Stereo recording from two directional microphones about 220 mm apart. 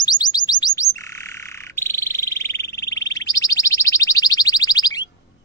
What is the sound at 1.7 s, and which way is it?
Frog, 10° left (ahead or behind).